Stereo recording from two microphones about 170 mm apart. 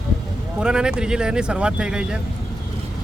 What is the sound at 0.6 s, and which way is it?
Speech, 5° right (ahead or behind).